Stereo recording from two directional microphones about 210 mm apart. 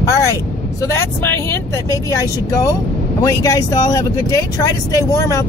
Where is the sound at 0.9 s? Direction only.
10° left (ahead or behind).